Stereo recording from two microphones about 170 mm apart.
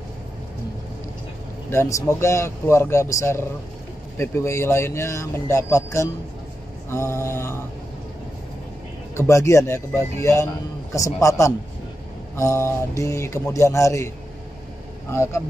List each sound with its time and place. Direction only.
1.7 s a man's voice: 15° left (ahead or behind)
9.1 s a man's voice: 15° left (ahead or behind)